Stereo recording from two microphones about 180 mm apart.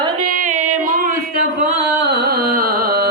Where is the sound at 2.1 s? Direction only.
60° right (ahead or behind).